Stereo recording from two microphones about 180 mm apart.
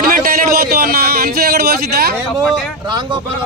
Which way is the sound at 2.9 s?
25° right (ahead or behind).